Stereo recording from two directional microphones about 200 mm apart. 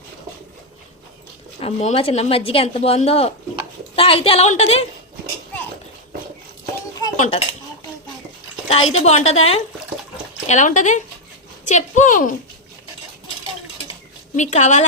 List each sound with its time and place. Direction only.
1.6 s a woman's voice: 30° left (ahead or behind)
7.2 s a woman's voice: 30° left (ahead or behind)
8.7 s a woman's voice: 30° left (ahead or behind)
14.3 s a woman's voice: 35° left (ahead or behind)